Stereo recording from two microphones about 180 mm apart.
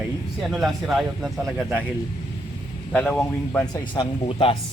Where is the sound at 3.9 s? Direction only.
30° left (ahead or behind).